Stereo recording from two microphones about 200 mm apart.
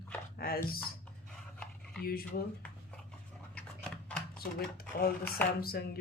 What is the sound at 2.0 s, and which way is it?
Speech, 50° left (ahead or behind).